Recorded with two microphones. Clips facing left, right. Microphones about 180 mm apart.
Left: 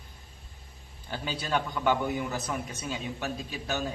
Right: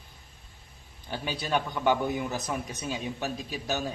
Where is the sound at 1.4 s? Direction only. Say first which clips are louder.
Right 1 dB; 15° right (ahead or behind).